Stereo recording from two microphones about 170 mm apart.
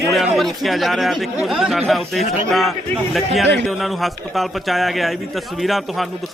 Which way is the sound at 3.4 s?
90° right.